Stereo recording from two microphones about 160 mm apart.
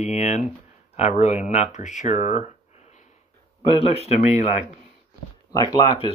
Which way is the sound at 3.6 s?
35° left (ahead or behind).